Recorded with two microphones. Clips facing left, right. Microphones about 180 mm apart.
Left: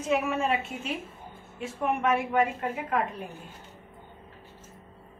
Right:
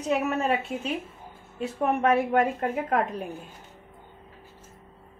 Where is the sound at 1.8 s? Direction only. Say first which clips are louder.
Right 3 dB; 45° right (ahead or behind).